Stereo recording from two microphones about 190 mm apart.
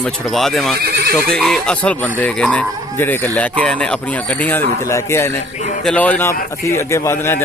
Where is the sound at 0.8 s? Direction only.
55° right (ahead or behind).